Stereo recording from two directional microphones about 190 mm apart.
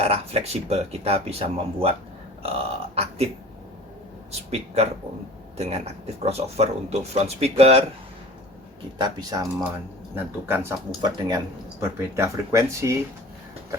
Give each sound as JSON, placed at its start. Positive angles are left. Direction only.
{"t": 0.0, "sound": "speech", "side_deg": -30}
{"t": 4.3, "sound": "speech", "side_deg": -35}
{"t": 9.0, "sound": "speech", "side_deg": -20}
{"t": 10.5, "sound": "speech", "side_deg": -15}